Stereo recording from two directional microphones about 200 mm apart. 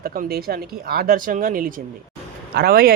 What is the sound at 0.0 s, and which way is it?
A man's voice, 45° right (ahead or behind).